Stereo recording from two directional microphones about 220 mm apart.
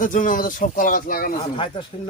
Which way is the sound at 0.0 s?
35° left (ahead or behind).